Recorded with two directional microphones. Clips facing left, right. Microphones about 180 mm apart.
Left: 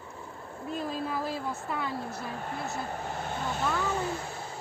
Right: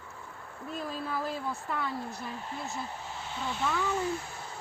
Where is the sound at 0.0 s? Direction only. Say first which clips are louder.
Left 4 dB; 30° left (ahead or behind).